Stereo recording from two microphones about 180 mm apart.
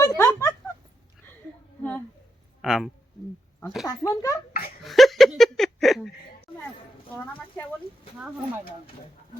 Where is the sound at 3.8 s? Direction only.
20° left (ahead or behind).